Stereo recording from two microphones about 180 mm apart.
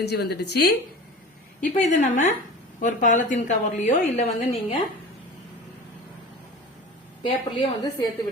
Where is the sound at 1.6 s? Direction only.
40° left (ahead or behind).